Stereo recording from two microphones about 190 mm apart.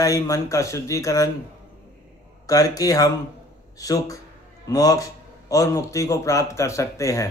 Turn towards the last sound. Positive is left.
turn(degrees=15)  # may be behind; listen again after turning